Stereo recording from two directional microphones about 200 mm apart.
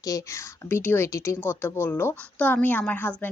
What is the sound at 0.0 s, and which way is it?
A woman's voice, 15° left (ahead or behind).